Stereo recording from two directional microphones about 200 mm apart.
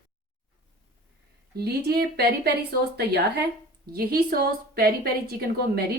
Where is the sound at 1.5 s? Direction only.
50° right (ahead or behind).